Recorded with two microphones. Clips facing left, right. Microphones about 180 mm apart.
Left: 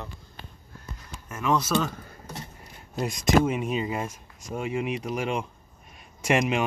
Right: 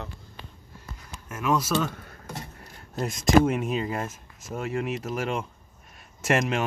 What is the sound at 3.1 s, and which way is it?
Speech, centre (ahead or behind).